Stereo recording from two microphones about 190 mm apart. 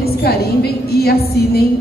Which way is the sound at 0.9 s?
55° left (ahead or behind).